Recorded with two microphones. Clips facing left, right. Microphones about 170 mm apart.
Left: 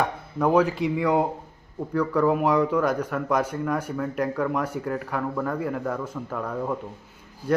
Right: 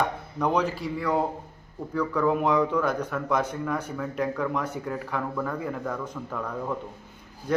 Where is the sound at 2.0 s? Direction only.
10° left (ahead or behind).